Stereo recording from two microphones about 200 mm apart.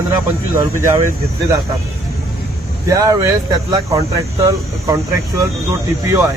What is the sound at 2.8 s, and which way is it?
Speech, 15° right (ahead or behind).